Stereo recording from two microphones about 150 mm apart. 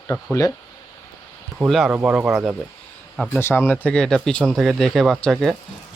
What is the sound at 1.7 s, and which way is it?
Speech, centre (ahead or behind).